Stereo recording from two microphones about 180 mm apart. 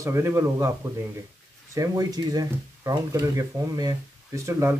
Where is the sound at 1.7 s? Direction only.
20° right (ahead or behind).